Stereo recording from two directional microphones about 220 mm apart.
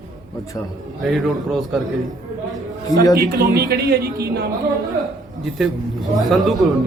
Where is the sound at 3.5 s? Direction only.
45° right (ahead or behind).